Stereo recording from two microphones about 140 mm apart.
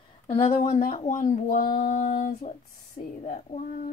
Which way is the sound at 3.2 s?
50° left (ahead or behind).